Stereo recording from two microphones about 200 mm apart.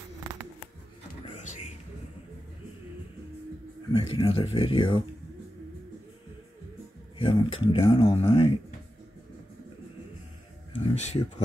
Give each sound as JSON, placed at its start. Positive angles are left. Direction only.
{"t": 1.3, "sound": "a sound", "side_deg": 35}
{"t": 3.9, "sound": "speech", "side_deg": 30}
{"t": 7.2, "sound": "speech", "side_deg": 25}
{"t": 11.0, "sound": "speech", "side_deg": 35}